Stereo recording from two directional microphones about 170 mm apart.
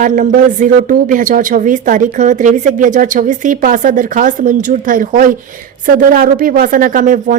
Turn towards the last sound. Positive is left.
turn(degrees=-50)  # may be behind; listen again after turning